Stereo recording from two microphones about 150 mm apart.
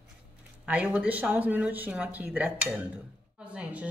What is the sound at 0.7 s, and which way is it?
Speech, 10° right (ahead or behind).